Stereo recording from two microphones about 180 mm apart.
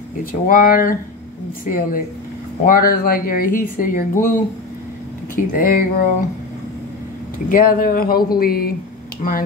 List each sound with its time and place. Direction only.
0.2 s speech: 50° left (ahead or behind)
5.3 s speech: 50° left (ahead or behind)
7.4 s speech: 50° left (ahead or behind)